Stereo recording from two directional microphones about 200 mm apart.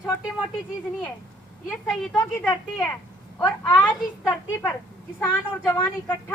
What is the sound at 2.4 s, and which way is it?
A woman's voice, 10° left (ahead or behind).